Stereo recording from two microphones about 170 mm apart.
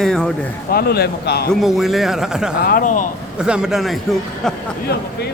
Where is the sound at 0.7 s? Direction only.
65° left (ahead or behind).